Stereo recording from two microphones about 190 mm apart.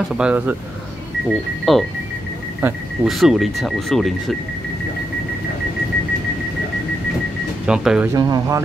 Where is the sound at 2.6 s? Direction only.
10° right (ahead or behind).